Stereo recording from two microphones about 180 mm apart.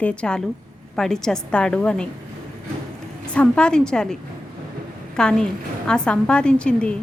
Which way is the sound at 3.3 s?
5° left (ahead or behind).